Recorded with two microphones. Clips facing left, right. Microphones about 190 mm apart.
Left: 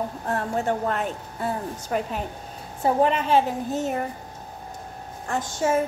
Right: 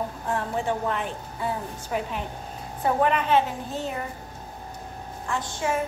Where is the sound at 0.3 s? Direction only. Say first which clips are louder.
Left 2 dB; 45° left (ahead or behind).